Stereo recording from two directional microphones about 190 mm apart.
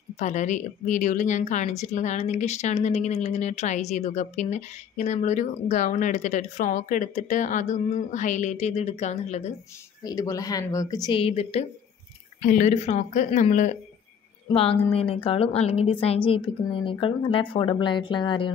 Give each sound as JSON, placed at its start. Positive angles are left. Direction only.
{"t": 0.2, "sound": "a woman's voice", "side_deg": 40}
{"t": 10.0, "sound": "speech", "side_deg": 20}
{"t": 12.4, "sound": "a woman's voice", "side_deg": 40}
{"t": 14.5, "sound": "a woman's voice", "side_deg": 30}